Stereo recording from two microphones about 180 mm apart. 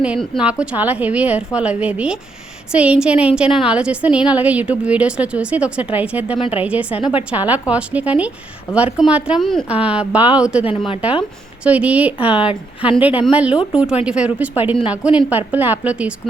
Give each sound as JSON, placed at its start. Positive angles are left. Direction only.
{"t": 0.0, "sound": "a woman's voice", "side_deg": -5}
{"t": 6.3, "sound": "a woman's voice", "side_deg": 30}
{"t": 6.6, "sound": "a woman's voice", "side_deg": -5}
{"t": 6.9, "sound": "a woman's voice", "side_deg": 30}
{"t": 7.3, "sound": "a woman's voice", "side_deg": -10}
{"t": 10.6, "sound": "a woman's voice", "side_deg": 30}
{"t": 11.6, "sound": "a woman's voice", "side_deg": -5}